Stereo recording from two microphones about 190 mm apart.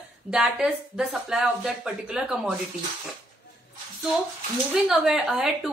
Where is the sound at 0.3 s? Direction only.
5° right (ahead or behind).